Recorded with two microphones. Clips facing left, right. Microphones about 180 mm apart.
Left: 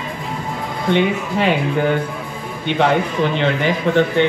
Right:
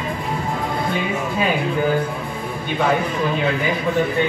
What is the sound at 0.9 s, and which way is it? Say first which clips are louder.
A man's voice: left 5 dB; 75° left (ahead or behind).